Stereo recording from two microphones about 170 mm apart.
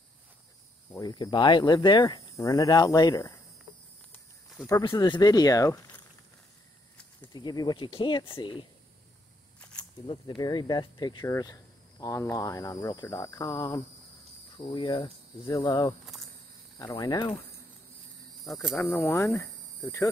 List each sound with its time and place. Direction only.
0.9 s speech: 25° left (ahead or behind)
4.6 s speech: 20° left (ahead or behind)
7.2 s speech: 25° left (ahead or behind)
9.6 s camera: 5° left (ahead or behind)
10.0 s speech: 30° left (ahead or behind)
18.8 s speech: 15° left (ahead or behind)